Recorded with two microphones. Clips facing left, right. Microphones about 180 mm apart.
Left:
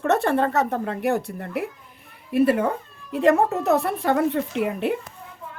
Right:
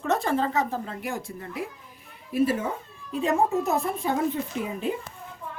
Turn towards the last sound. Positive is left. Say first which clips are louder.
# left 5 dB
turn(degrees=70)  # may be behind; listen again after turning